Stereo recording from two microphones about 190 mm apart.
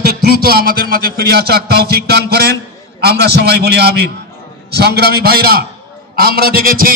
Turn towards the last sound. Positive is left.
turn(degrees=-50)  # may be behind; listen again after turning